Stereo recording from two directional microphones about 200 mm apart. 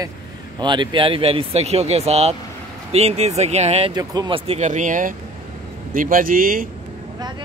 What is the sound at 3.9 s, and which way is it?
A man's voice, 20° right (ahead or behind).